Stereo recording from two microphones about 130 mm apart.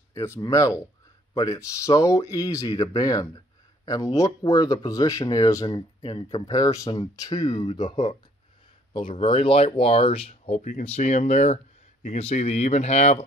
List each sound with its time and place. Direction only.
0.1 s speech: 20° left (ahead or behind); by 10.6 s 50° left (ahead or behind)
10.6 s speech: 90° left
10.9 s speech: 65° left (ahead or behind)